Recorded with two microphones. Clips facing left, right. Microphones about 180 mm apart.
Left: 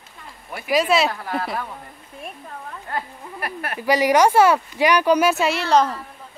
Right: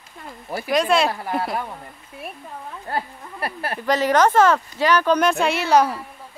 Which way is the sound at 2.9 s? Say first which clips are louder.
Right 2 dB; 30° right (ahead or behind).